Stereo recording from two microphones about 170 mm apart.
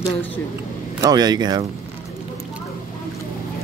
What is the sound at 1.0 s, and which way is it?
Speech, 25° right (ahead or behind).